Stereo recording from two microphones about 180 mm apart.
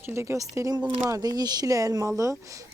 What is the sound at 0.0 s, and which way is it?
Speech, 15° right (ahead or behind).